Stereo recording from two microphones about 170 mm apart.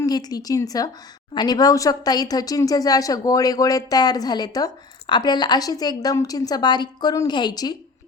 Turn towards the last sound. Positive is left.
turn(degrees=25)  # may be behind; listen again after turning